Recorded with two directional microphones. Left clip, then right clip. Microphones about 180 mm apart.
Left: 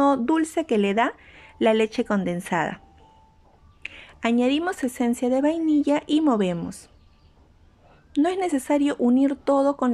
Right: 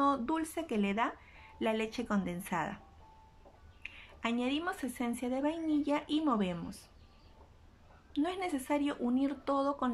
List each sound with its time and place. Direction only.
0.0 s speech: 45° left (ahead or behind)
3.8 s speech: 45° left (ahead or behind)
8.1 s speech: 45° left (ahead or behind)